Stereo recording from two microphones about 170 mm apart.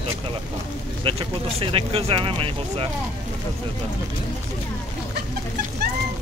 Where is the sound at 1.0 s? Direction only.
30° right (ahead or behind).